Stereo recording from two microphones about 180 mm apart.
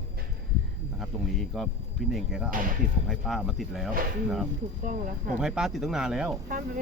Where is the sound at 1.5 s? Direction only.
Centre (ahead or behind).